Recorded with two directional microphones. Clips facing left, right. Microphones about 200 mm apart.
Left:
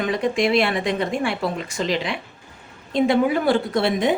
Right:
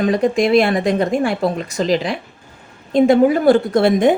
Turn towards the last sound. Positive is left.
turn(degrees=-50)  # may be behind; listen again after turning